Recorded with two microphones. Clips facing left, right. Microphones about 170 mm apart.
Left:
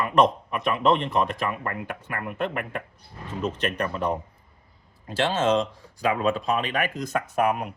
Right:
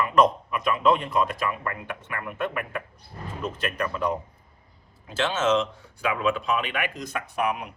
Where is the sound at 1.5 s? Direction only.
45° left (ahead or behind).